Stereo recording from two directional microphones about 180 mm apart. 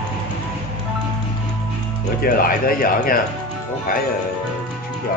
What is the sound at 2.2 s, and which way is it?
Speech, 55° left (ahead or behind).